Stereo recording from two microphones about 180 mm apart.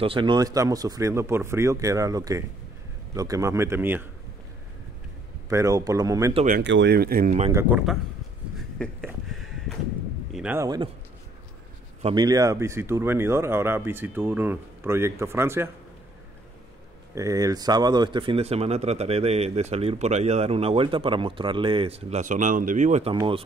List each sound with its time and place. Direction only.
0.0 s speech: 30° right (ahead or behind); by 4.1 s 10° right (ahead or behind)
5.5 s speech: 15° right (ahead or behind)
6.6 s speech: 80° right; by 7.3 s 55° right (ahead or behind)
8.5 s a sound: 5° left (ahead or behind)
10.6 s speech: 20° right (ahead or behind)
12.0 s speech: 25° right (ahead or behind)
17.1 s speech: 20° right (ahead or behind); by 23.1 s 40° right (ahead or behind)